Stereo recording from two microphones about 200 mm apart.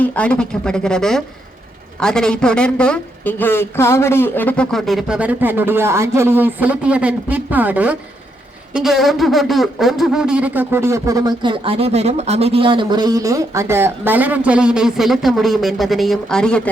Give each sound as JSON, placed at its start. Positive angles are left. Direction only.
{"t": 0.0, "sound": "a man's voice", "side_deg": 5}